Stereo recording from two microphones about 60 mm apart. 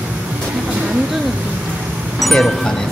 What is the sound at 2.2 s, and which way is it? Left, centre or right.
Speech, centre.